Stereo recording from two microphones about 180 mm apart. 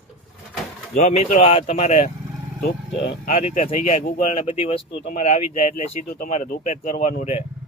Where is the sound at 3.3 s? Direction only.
35° left (ahead or behind).